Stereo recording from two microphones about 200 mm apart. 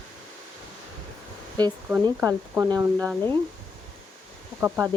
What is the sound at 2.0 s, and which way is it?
Speech, 10° right (ahead or behind).